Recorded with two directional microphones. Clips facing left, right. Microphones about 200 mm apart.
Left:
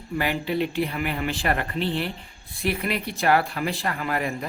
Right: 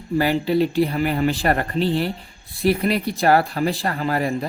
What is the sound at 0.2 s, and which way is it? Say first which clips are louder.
Speech: right 6 dB; 35° right (ahead or behind).